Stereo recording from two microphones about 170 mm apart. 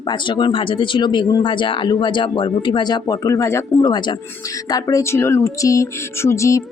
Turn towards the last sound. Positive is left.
turn(degrees=15)  # may be behind; listen again after turning